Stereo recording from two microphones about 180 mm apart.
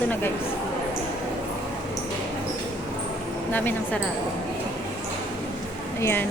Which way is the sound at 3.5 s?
10° left (ahead or behind).